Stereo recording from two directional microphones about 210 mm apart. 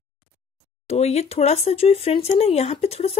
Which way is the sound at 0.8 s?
30° left (ahead or behind).